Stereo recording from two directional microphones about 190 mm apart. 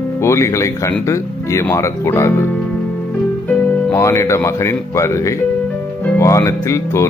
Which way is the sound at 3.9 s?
15° left (ahead or behind).